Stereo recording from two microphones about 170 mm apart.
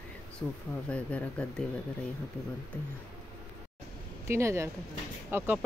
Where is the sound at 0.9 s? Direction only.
5° left (ahead or behind).